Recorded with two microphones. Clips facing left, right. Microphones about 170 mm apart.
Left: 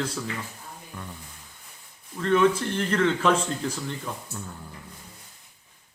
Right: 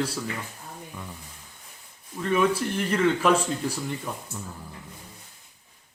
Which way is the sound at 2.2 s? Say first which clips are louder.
Left 2 dB; 10° right (ahead or behind).